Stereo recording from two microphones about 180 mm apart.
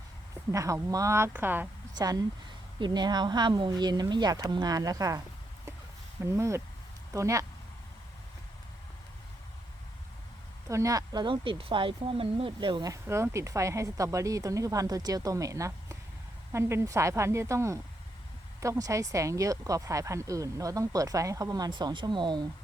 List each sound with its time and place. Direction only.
0.5 s speech: 20° right (ahead or behind)
2.0 s speech: 20° right (ahead or behind)
6.2 s speech: 15° right (ahead or behind)
10.7 s speech: 15° right (ahead or behind)